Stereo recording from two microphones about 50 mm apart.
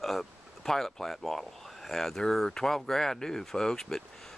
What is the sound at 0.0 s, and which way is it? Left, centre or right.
Speech, centre.